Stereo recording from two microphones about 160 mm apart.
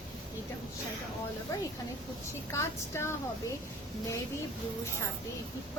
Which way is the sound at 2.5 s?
15° left (ahead or behind).